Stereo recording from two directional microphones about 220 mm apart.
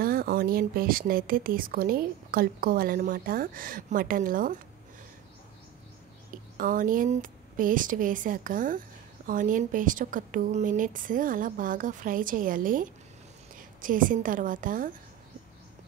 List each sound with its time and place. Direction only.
0.0 s a woman's voice: 40° right (ahead or behind)
6.6 s a woman's voice: 40° right (ahead or behind)